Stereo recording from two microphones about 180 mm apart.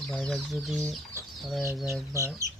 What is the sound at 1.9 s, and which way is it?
Speech, 15° right (ahead or behind).